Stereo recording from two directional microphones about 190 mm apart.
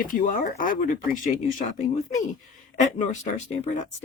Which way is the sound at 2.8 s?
40° left (ahead or behind).